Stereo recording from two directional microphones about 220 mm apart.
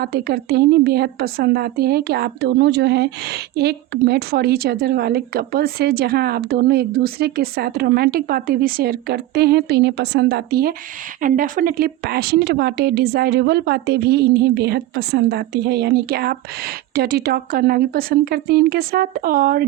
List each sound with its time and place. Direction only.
0.0 s a woman's voice: 45° right (ahead or behind)